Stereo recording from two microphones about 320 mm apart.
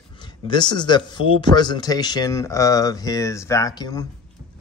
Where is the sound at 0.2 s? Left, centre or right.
Centre.